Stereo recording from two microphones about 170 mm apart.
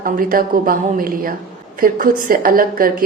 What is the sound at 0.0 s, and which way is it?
A woman's voice, 55° right (ahead or behind).